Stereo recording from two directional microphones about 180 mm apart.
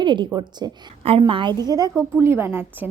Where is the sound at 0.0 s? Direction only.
25° right (ahead or behind).